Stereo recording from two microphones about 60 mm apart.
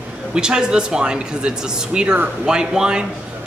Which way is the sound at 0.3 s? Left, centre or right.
Centre.